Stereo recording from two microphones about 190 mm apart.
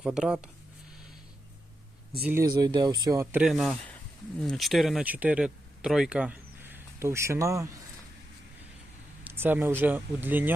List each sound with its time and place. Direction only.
0.0 s speech: 5° right (ahead or behind)
2.2 s speech: 15° right (ahead or behind)
3.4 s speech: centre (ahead or behind); by 7.8 s 15° right (ahead or behind)
9.2 s speech: 10° right (ahead or behind)